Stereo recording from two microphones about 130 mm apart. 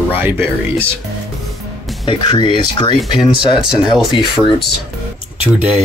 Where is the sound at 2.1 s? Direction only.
35° left (ahead or behind).